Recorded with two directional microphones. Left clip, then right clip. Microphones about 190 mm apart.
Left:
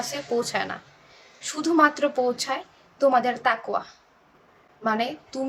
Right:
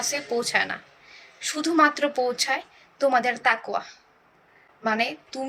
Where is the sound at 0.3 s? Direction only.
15° left (ahead or behind).